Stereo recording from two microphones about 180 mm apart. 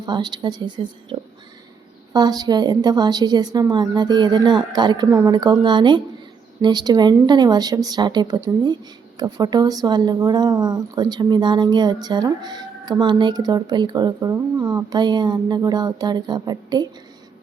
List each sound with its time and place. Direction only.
0.0 s speech: 25° right (ahead or behind)
1.1 s a sound: 25° right (ahead or behind)
2.1 s speech: 20° right (ahead or behind)